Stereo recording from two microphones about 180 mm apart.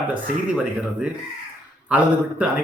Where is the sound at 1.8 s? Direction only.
10° right (ahead or behind).